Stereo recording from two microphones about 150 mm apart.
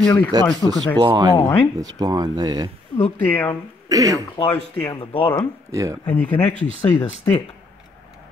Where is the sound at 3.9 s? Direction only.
25° right (ahead or behind).